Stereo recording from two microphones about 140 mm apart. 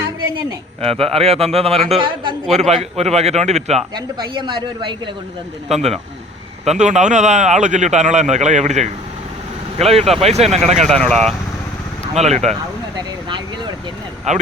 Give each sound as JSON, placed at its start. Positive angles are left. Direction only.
{"t": 0.8, "sound": "a man's voice", "side_deg": -45}
{"t": 2.5, "sound": "a man's voice", "side_deg": -50}
{"t": 3.9, "sound": "a woman's voice", "side_deg": -35}
{"t": 5.6, "sound": "a man's voice", "side_deg": -50}
{"t": 9.7, "sound": "a man's voice", "side_deg": -45}
{"t": 10.8, "sound": "speech", "side_deg": 5}
{"t": 12.1, "sound": "a man's voice", "side_deg": -50}
{"t": 13.0, "sound": "a woman's voice", "side_deg": -35}
{"t": 14.3, "sound": "a man's voice", "side_deg": -55}